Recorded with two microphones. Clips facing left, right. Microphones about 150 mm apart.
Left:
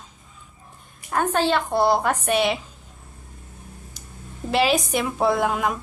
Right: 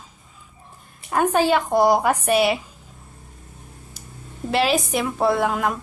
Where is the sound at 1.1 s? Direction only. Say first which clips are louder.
Right 3 dB; 10° right (ahead or behind).